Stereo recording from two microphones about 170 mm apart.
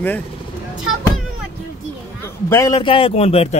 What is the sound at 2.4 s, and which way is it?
A man's voice, 20° left (ahead or behind).